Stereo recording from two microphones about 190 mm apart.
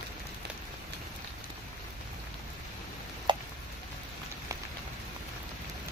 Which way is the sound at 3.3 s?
25° right (ahead or behind).